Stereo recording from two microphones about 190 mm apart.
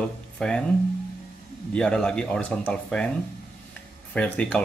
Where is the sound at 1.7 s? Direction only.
5° left (ahead or behind).